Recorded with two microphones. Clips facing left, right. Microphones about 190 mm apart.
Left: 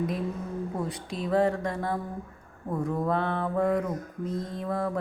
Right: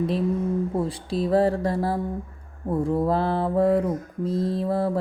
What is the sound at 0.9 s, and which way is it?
Mantra, 35° right (ahead or behind).